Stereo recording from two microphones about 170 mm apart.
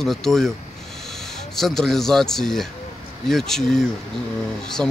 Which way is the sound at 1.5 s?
Centre (ahead or behind).